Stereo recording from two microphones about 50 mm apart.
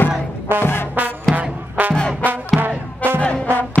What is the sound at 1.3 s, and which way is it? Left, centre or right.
Music, right.